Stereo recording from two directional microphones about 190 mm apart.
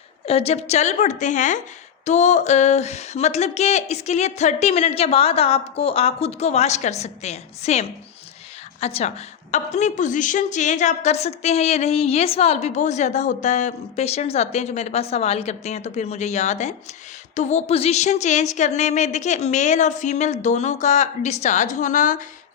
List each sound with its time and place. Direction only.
0.3 s a woman's voice: 30° left (ahead or behind)